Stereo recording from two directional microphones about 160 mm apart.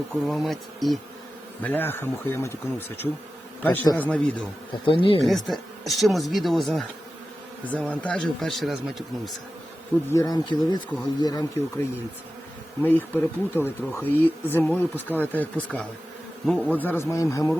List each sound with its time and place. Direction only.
0.1 s speech: centre (ahead or behind)
1.6 s speech: 10° left (ahead or behind)
4.9 s speech: 35° left (ahead or behind)
5.2 s speech: centre (ahead or behind)
10.1 s speech: 20° left (ahead or behind)
12.8 s speech: 10° left (ahead or behind)